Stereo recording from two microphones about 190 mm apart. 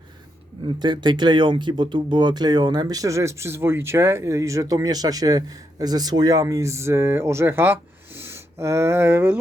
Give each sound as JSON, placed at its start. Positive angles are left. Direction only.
{"t": 0.8, "sound": "speech", "side_deg": -25}